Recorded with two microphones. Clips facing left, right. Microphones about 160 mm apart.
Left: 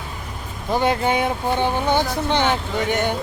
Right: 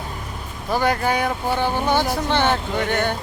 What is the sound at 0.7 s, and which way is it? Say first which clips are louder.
Speech: left 1 dB; 20° left (ahead or behind).